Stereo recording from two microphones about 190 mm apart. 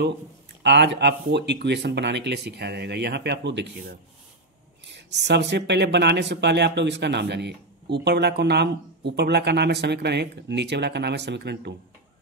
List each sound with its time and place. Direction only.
0.6 s speech: 65° right (ahead or behind)
4.8 s speech: 65° right (ahead or behind)